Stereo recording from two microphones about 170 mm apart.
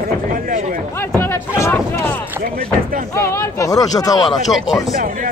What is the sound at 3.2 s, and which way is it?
Speech, 20° left (ahead or behind).